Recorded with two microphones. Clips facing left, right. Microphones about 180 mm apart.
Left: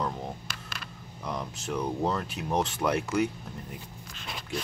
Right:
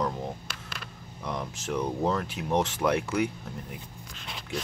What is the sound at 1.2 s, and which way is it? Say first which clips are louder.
Speech: right 1 dB; 5° left (ahead or behind).